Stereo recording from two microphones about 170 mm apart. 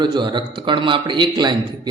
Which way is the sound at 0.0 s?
25° right (ahead or behind).